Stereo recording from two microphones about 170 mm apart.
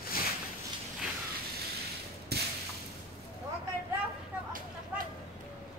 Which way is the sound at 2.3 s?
70° right (ahead or behind).